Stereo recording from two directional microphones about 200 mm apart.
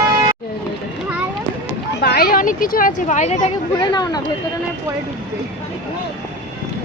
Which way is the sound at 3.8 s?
20° left (ahead or behind).